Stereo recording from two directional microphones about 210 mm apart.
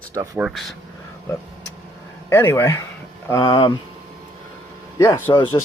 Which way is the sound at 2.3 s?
10° left (ahead or behind).